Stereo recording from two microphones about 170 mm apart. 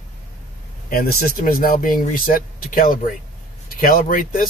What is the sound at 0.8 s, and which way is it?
Speech, 55° left (ahead or behind).